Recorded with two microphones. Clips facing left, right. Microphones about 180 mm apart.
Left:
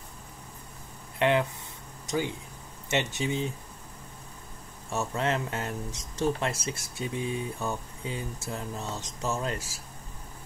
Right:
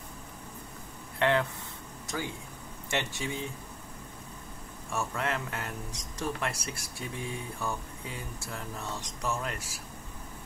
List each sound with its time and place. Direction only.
1.2 s speech: 20° left (ahead or behind)
4.9 s speech: 25° left (ahead or behind)